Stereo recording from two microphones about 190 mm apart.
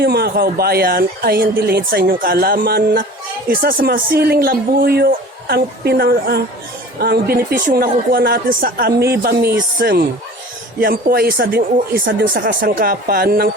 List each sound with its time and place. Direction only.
0.0 s speech: 55° right (ahead or behind)